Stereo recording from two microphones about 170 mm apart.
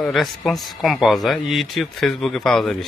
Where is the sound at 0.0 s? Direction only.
Centre (ahead or behind).